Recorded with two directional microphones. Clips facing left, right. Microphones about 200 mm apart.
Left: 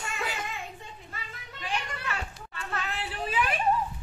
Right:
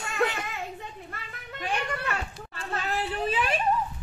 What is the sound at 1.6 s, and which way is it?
Children playing, 55° right (ahead or behind).